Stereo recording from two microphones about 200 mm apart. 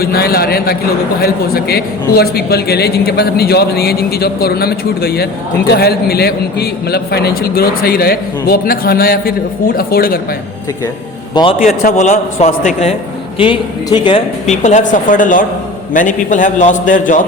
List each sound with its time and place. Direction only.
0.0 s a man's voice: 50° left (ahead or behind)
11.6 s speech: 40° left (ahead or behind)
13.4 s speech: 25° left (ahead or behind); by 17.2 s 40° left (ahead or behind)